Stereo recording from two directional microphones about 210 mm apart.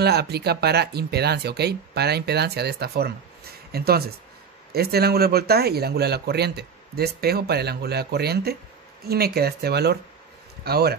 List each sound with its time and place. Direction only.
0.0 s speech: 50° right (ahead or behind)